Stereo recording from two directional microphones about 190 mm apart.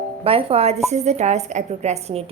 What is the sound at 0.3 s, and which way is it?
A woman's voice, 30° right (ahead or behind).